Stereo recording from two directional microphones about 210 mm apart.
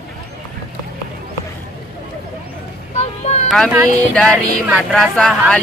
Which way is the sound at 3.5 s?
Centre (ahead or behind).